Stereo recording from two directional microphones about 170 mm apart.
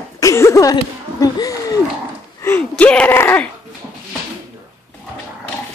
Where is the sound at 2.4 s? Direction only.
10° left (ahead or behind).